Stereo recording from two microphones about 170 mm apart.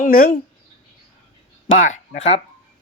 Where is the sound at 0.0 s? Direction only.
55° left (ahead or behind).